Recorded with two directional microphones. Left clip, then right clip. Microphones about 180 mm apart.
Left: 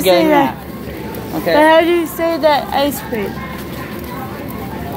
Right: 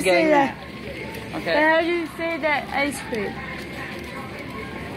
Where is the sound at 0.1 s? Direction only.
Centre (ahead or behind).